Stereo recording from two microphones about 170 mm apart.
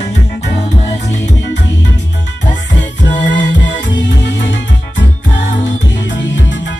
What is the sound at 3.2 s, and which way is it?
Music, 90° left.